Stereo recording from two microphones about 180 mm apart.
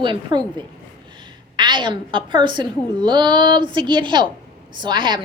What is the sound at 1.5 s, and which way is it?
A woman's voice, 25° right (ahead or behind).